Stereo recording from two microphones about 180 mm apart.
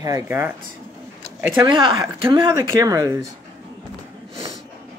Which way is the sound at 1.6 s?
30° right (ahead or behind).